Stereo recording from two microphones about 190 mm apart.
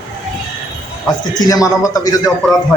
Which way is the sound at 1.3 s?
20° left (ahead or behind).